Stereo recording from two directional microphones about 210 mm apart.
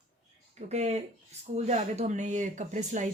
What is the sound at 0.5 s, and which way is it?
Speech, 30° right (ahead or behind).